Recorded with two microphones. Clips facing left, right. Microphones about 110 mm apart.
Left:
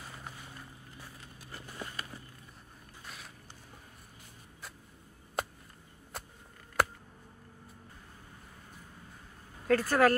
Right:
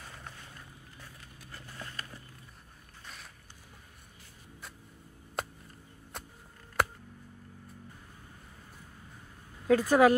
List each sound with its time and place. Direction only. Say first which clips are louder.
0.0 s boat: left 1 dB; 5° left (ahead or behind)
1.5 s vehicle: left 2 dB; 15° left (ahead or behind)
5.4 s a sound: left 1 dB; centre (ahead or behind)
9.7 s speech: right 3 dB; 10° right (ahead or behind)